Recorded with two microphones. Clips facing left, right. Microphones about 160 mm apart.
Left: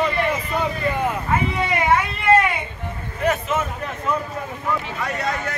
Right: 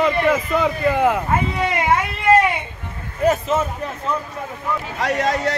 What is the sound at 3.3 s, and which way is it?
Speech, 35° right (ahead or behind).